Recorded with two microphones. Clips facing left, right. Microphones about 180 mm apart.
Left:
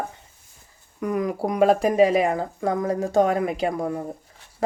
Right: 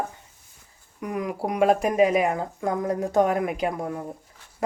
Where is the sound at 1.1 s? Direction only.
40° left (ahead or behind).